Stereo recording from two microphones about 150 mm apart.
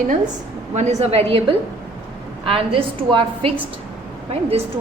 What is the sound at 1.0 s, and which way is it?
A woman's voice, 40° right (ahead or behind).